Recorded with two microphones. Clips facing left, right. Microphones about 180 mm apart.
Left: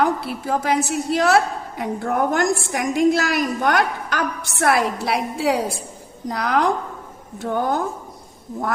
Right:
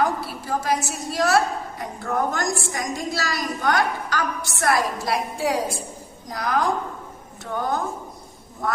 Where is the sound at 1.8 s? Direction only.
60° left (ahead or behind).